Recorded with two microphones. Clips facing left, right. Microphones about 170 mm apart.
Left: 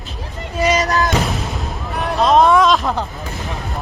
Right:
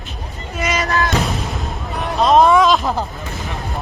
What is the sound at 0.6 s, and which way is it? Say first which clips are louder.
Music: left 4 dB; 35° left (ahead or behind).